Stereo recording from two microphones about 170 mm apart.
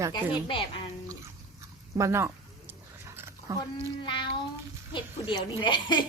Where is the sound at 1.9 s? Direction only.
15° right (ahead or behind).